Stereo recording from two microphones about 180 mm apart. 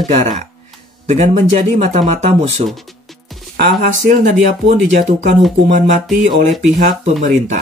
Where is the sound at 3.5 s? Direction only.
50° right (ahead or behind).